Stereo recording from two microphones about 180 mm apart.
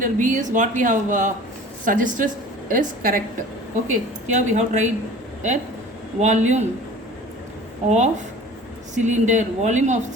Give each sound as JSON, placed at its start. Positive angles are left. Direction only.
{"t": 0.0, "sound": "a woman's voice", "side_deg": -45}
{"t": 6.1, "sound": "speech", "side_deg": -40}
{"t": 7.9, "sound": "speech", "side_deg": -40}